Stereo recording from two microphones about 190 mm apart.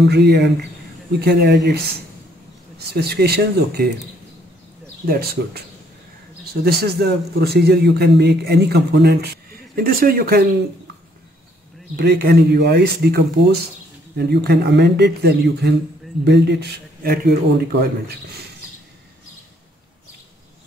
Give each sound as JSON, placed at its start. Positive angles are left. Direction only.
{"t": 0.1, "sound": "a man's voice", "side_deg": -60}
{"t": 5.0, "sound": "a man's voice", "side_deg": -55}
{"t": 12.0, "sound": "a man's voice", "side_deg": -60}